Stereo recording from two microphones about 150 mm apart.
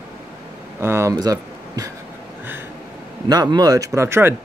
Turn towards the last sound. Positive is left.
turn(degrees=-15)  # may be behind; listen again after turning